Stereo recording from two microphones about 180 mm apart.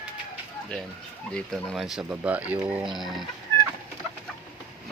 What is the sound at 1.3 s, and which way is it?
Speech, 5° left (ahead or behind).